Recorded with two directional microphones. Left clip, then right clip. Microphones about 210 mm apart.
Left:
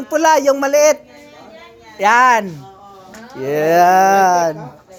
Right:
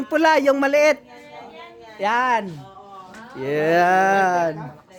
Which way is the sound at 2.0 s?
25° left (ahead or behind).